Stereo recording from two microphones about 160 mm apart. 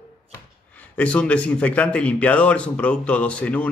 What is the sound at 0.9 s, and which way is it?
A man's voice, 10° left (ahead or behind).